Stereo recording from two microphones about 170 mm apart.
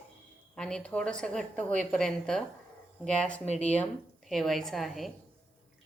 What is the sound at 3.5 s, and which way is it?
Speech, 40° left (ahead or behind).